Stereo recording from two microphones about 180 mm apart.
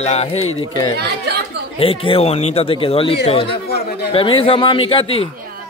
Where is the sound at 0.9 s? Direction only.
65° right (ahead or behind).